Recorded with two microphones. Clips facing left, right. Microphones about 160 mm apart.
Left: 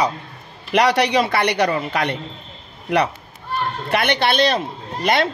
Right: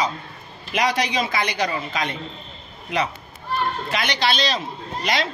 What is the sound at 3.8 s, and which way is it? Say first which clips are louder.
Speech: left 4 dB; 60° left (ahead or behind).